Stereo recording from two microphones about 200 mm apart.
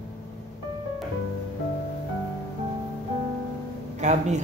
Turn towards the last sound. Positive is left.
turn(degrees=-35)  # may be behind; listen again after turning